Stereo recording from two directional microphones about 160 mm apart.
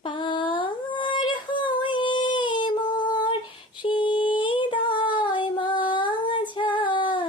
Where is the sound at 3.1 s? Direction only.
30° left (ahead or behind).